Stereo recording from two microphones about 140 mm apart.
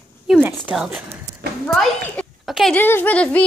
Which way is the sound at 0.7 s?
5° right (ahead or behind).